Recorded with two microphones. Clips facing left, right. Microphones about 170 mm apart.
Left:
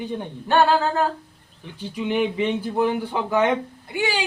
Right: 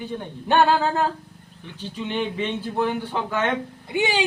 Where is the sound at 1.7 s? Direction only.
10° left (ahead or behind).